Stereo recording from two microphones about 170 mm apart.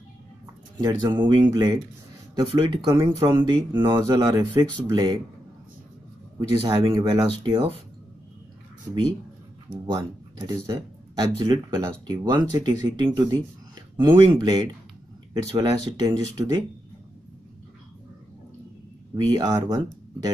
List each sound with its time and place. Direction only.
0.7 s speech: 25° right (ahead or behind)
6.6 s speech: 30° right (ahead or behind)
9.9 s speech: 20° right (ahead or behind)
15.6 s speech: 25° right (ahead or behind)
19.1 s speech: 25° right (ahead or behind)